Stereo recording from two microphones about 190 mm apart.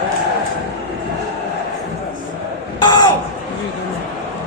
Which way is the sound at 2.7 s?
25° left (ahead or behind).